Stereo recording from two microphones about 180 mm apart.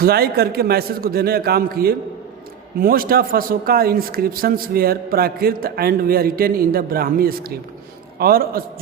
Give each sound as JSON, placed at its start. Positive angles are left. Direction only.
{"t": 0.0, "sound": "speech", "side_deg": -60}